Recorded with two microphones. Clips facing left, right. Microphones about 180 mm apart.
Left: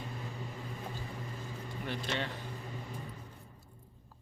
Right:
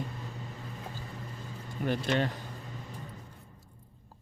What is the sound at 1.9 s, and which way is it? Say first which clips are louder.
Speech: right 8 dB; 45° right (ahead or behind).